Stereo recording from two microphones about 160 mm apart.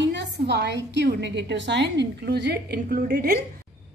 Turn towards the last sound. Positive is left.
turn(degrees=-70)  # may be behind; listen again after turning